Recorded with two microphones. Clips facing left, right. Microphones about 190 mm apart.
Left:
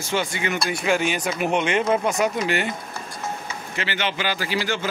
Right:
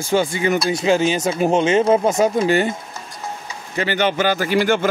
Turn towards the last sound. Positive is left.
turn(degrees=-55)  # may be behind; listen again after turning